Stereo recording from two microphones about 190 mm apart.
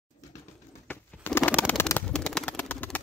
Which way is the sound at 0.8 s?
10° left (ahead or behind).